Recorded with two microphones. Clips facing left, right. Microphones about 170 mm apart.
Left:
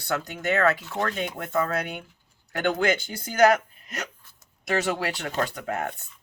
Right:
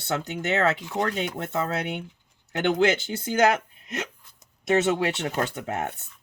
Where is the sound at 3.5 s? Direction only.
25° right (ahead or behind).